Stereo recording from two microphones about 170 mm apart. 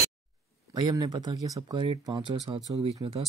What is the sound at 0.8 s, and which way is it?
Speech, 25° right (ahead or behind).